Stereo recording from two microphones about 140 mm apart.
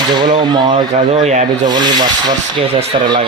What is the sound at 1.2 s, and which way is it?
Speech, 55° right (ahead or behind).